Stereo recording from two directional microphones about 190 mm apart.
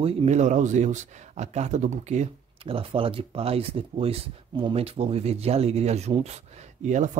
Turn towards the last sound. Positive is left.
turn(degrees=-40)  # may be behind; listen again after turning